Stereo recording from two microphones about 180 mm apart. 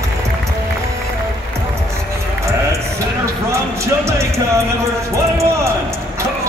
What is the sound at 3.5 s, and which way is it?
Music, 15° right (ahead or behind).